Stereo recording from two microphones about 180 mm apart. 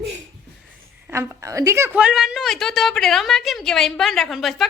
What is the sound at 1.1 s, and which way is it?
A woman's voice, 15° right (ahead or behind).